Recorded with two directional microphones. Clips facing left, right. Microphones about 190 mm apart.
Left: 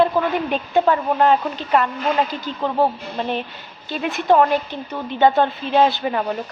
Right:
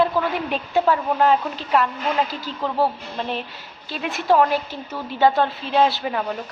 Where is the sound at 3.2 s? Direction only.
Centre (ahead or behind).